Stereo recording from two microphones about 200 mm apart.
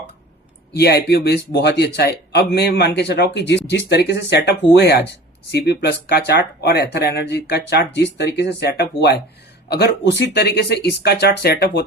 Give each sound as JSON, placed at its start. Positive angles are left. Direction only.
{"t": 0.7, "sound": "speech", "side_deg": 55}